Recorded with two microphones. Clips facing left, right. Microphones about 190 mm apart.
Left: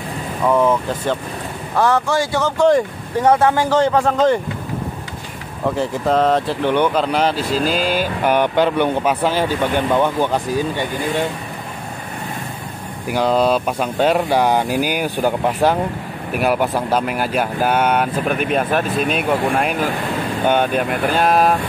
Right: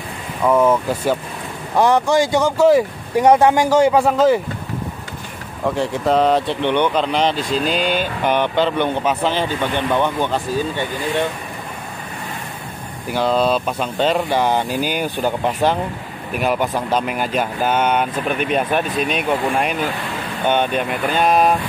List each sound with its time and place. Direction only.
0.5 s speech: 5° right (ahead or behind)
1.8 s speech: 15° right (ahead or behind)
5.7 s speech: centre (ahead or behind)
13.1 s speech: 10° left (ahead or behind)